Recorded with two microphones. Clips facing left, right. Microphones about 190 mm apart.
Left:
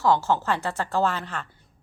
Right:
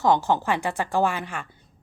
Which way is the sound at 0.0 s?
15° right (ahead or behind).